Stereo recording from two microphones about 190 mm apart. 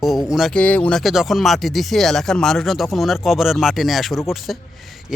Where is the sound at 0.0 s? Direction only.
Centre (ahead or behind).